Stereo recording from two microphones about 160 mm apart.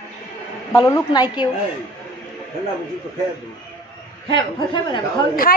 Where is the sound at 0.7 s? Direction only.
20° left (ahead or behind).